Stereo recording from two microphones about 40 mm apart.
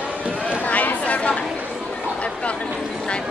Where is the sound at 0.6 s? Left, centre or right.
Left.